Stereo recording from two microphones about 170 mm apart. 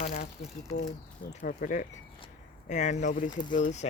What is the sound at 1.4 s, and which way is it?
Speech, 50° left (ahead or behind).